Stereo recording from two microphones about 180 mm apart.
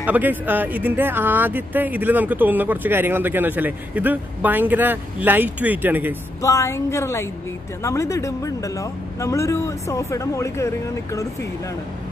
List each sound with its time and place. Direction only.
0.0 s speech: 10° right (ahead or behind)
6.4 s speech: 15° left (ahead or behind)